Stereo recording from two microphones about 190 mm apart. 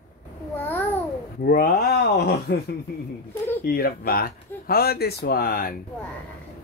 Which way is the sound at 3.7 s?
50° left (ahead or behind).